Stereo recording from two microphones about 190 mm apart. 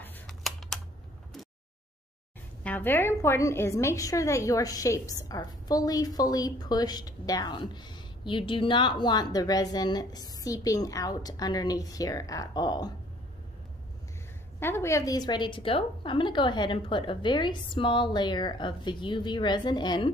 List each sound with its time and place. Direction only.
0.0 s computer keyboard: centre (ahead or behind)
2.6 s a woman's voice: 10° left (ahead or behind)
14.6 s a woman's voice: 15° left (ahead or behind)